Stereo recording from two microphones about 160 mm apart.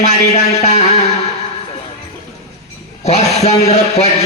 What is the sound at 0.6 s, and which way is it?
Music, 40° left (ahead or behind).